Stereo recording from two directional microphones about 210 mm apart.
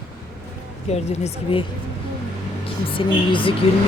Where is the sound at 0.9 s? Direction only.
30° left (ahead or behind).